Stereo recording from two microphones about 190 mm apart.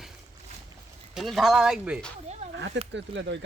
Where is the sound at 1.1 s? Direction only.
Centre (ahead or behind).